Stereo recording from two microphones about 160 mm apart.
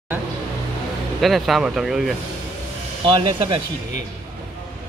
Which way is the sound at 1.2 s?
Centre (ahead or behind).